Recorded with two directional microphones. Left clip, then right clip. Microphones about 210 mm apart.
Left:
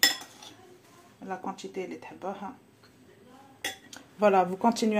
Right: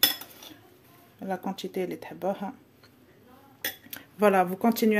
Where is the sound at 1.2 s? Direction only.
45° right (ahead or behind).